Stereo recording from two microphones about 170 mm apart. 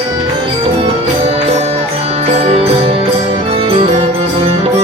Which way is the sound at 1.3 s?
40° right (ahead or behind).